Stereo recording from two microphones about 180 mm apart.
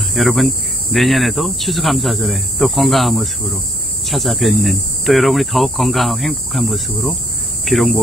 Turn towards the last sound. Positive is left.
turn(degrees=0)  # may be behind; listen again after turning